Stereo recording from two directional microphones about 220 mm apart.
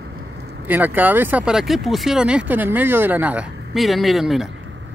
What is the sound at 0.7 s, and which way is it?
Speech, 10° right (ahead or behind).